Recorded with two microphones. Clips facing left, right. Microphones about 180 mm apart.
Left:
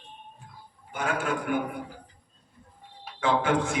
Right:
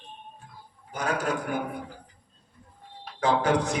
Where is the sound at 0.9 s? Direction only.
40° right (ahead or behind).